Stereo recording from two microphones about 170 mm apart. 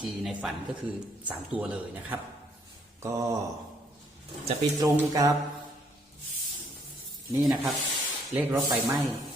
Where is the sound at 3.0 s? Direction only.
15° right (ahead or behind).